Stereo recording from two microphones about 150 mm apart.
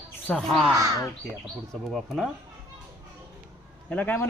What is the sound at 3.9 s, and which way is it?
Speech, 10° left (ahead or behind).